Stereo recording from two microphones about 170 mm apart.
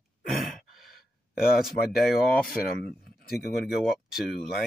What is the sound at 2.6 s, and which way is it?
Speech, 65° left (ahead or behind).